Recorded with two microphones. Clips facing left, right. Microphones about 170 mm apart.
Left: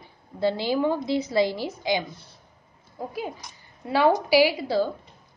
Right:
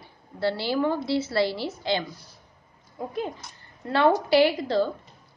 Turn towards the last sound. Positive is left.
turn(degrees=10)  # may be behind; listen again after turning